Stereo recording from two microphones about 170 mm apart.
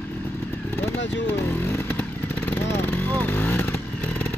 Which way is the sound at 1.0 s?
90° left.